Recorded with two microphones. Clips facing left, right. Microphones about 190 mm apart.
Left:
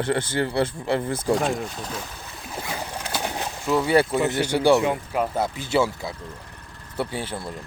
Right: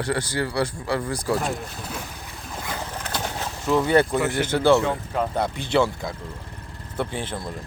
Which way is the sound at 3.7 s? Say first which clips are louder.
Right 1 dB; 5° left (ahead or behind).